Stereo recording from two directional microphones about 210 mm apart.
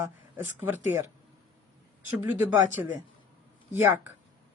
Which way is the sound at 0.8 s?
35° left (ahead or behind).